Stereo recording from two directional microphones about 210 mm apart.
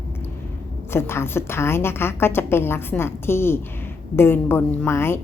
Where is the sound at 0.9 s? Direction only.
10° left (ahead or behind).